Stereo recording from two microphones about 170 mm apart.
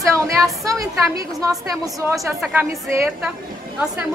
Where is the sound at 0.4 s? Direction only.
20° right (ahead or behind).